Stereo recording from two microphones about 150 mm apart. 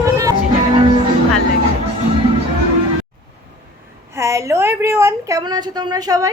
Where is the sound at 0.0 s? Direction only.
20° right (ahead or behind).